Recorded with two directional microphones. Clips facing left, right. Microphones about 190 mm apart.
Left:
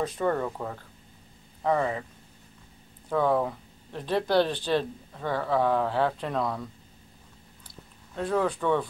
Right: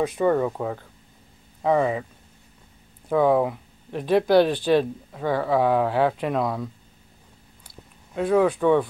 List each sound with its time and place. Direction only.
0.0 s speech: 10° right (ahead or behind)
3.1 s speech: 10° right (ahead or behind)
8.1 s speech: 10° right (ahead or behind)